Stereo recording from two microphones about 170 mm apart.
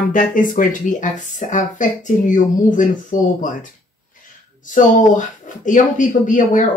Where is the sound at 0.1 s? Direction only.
50° left (ahead or behind).